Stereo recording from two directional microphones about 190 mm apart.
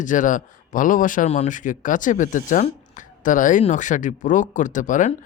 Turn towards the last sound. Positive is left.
turn(degrees=40)  # may be behind; listen again after turning